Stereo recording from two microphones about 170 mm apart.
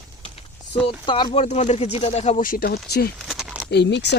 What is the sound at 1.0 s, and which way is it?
Speech, 30° left (ahead or behind).